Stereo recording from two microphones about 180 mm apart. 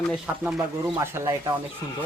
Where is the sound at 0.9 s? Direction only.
15° right (ahead or behind).